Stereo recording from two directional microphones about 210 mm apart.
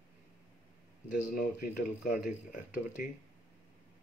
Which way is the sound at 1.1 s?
40° left (ahead or behind).